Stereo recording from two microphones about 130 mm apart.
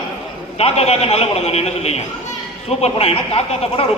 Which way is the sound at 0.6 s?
55° left (ahead or behind).